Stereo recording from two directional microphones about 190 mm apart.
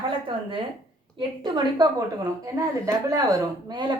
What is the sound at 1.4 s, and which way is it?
Speech, 20° right (ahead or behind).